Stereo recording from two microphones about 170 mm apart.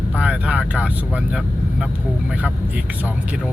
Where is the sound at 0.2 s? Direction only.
5° right (ahead or behind).